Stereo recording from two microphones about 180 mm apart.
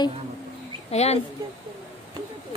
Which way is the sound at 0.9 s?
35° left (ahead or behind).